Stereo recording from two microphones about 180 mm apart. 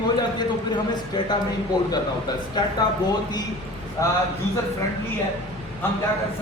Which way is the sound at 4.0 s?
20° left (ahead or behind).